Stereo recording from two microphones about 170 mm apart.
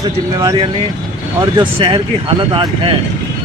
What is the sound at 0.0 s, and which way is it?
Speech, 20° right (ahead or behind).